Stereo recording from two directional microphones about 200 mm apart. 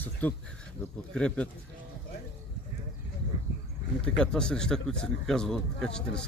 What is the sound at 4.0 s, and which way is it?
Speech, 5° left (ahead or behind).